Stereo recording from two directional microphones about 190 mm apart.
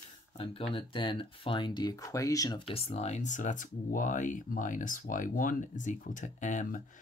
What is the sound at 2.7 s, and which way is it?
Speech, 30° left (ahead or behind).